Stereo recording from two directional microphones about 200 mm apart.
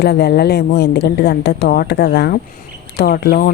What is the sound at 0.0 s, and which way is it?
A woman's voice, 55° left (ahead or behind).